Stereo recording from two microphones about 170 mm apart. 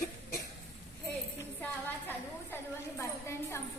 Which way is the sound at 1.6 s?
10° left (ahead or behind).